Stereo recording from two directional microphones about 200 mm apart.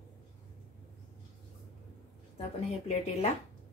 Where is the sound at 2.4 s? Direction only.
30° left (ahead or behind).